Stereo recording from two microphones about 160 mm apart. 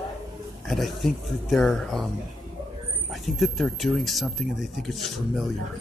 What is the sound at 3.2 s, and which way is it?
Speech, centre (ahead or behind).